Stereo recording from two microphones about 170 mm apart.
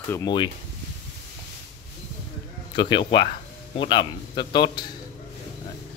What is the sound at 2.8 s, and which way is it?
A man's voice, 30° left (ahead or behind).